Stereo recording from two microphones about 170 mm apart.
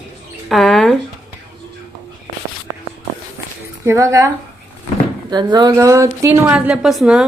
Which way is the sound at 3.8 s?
20° right (ahead or behind).